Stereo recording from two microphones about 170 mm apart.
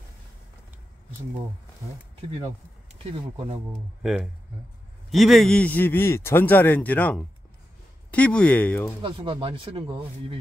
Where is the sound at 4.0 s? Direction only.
Centre (ahead or behind).